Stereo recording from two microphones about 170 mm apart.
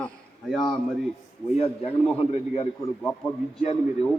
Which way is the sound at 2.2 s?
35° left (ahead or behind).